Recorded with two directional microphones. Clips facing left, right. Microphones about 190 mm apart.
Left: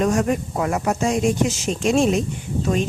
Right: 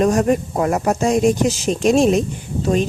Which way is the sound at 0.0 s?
35° right (ahead or behind).